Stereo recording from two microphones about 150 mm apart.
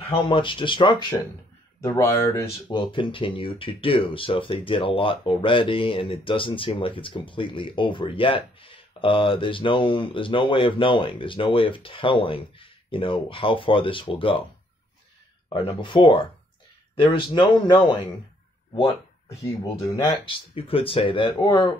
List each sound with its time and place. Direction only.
0.0 s speech: 40° left (ahead or behind)
1.8 s speech: 20° left (ahead or behind)
2.7 s speech: 30° left (ahead or behind)
15.5 s speech: 35° left (ahead or behind)
19.7 s speech: 35° left (ahead or behind)